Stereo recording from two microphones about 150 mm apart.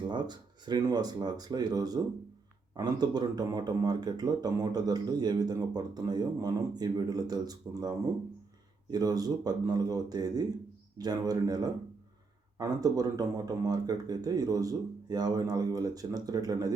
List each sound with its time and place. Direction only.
0.1 s speech: 30° right (ahead or behind)
8.9 s speech: 25° right (ahead or behind)